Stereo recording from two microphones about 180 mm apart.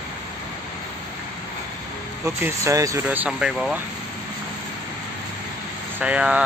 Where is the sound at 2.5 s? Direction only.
15° right (ahead or behind).